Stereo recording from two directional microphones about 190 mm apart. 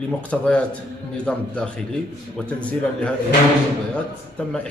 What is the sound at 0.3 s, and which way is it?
A man's voice, 5° left (ahead or behind).